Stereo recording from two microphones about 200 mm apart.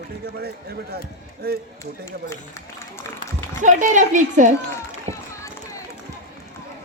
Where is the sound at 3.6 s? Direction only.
40° right (ahead or behind).